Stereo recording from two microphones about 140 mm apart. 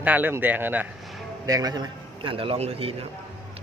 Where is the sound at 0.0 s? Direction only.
10° right (ahead or behind).